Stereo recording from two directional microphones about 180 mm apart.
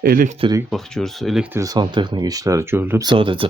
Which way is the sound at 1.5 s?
20° right (ahead or behind).